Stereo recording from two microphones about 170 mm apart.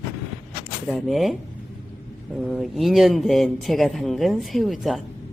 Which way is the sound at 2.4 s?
Centre (ahead or behind).